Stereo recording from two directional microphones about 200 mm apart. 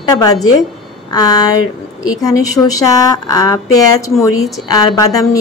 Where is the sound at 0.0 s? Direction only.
20° left (ahead or behind).